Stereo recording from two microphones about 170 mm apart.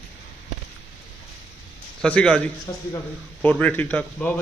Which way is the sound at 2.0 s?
5° left (ahead or behind).